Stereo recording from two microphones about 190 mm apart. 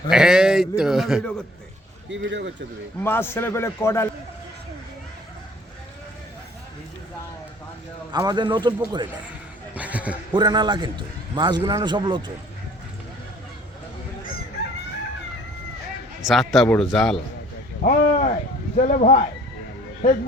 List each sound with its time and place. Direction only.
0.1 s a man's voice: 5° right (ahead or behind)
2.0 s speech: 75° right (ahead or behind)
3.0 s a man's voice: 10° left (ahead or behind)
8.1 s a man's voice: 20° right (ahead or behind)
9.7 s a sound: 5° right (ahead or behind)
10.3 s a man's voice: 25° right (ahead or behind)
16.2 s a man's voice: centre (ahead or behind)
17.8 s speech: 45° left (ahead or behind)